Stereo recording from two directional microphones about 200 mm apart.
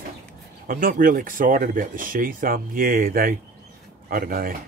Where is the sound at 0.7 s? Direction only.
45° right (ahead or behind).